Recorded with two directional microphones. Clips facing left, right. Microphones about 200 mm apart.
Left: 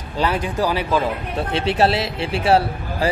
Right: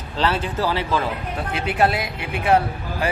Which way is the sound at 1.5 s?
25° left (ahead or behind).